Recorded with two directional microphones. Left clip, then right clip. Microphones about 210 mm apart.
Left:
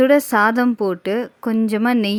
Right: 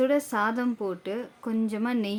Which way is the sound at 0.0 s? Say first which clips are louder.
Left 11 dB; 40° left (ahead or behind).